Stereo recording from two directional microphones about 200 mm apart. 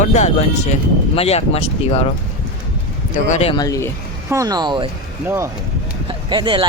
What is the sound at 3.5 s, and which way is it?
Speech, 15° left (ahead or behind).